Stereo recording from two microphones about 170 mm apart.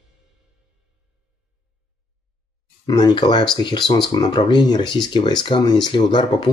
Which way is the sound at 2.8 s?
25° left (ahead or behind).